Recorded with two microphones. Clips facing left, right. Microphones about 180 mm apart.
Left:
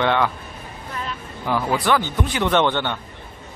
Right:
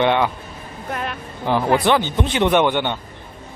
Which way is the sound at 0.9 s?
60° right (ahead or behind).